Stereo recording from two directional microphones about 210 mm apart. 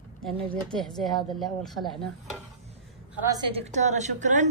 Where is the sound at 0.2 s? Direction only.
5° left (ahead or behind).